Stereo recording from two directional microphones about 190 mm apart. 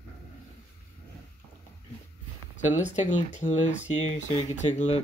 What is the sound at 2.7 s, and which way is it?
Speech, 40° left (ahead or behind).